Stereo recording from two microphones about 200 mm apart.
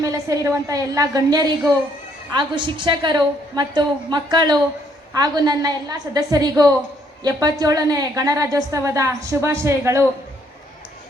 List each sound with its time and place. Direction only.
0.0 s a woman's voice: 15° right (ahead or behind)